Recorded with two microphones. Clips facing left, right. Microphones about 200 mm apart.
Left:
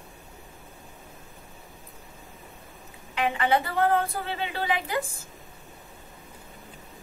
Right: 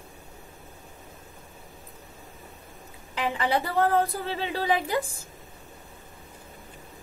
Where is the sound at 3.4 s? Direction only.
35° right (ahead or behind).